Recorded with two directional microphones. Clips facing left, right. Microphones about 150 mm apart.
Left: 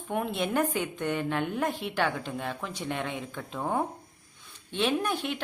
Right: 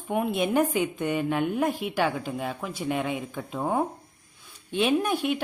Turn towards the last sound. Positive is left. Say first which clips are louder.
# right 5 dB
turn(degrees=-15)  # may be behind; listen again after turning